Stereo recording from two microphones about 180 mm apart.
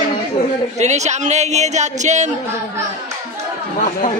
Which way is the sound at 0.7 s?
40° right (ahead or behind).